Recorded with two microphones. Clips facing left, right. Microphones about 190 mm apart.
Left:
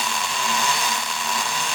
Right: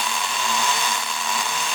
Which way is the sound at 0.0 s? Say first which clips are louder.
Even; centre (ahead or behind).